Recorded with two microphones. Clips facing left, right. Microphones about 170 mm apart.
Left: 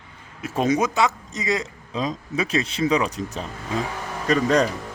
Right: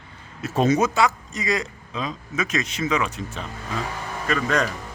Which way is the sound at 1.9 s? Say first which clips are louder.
Left 3 dB; 35° left (ahead or behind).